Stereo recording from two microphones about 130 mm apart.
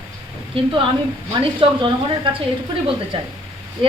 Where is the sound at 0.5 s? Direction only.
45° right (ahead or behind).